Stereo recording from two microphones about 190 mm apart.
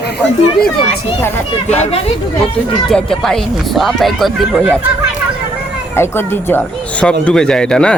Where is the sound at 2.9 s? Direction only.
5° left (ahead or behind).